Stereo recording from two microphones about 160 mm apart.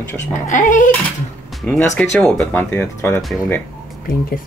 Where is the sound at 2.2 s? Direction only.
5° left (ahead or behind).